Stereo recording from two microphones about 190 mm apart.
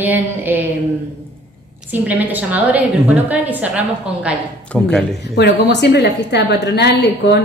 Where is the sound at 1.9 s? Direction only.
10° right (ahead or behind).